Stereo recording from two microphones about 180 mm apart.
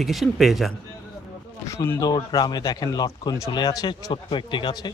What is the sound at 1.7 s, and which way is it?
Speech, 15° left (ahead or behind).